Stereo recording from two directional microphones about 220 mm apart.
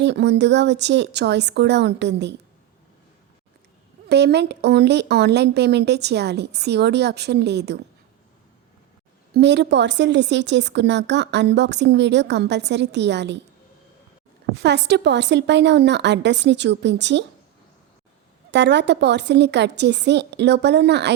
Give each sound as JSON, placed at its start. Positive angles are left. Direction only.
{"t": 0.0, "sound": "a woman's voice", "side_deg": -50}
{"t": 4.1, "sound": "a woman's voice", "side_deg": -50}
{"t": 9.3, "sound": "a woman's voice", "side_deg": -50}
{"t": 14.5, "sound": "a woman's voice", "side_deg": -50}
{"t": 18.5, "sound": "a woman's voice", "side_deg": -50}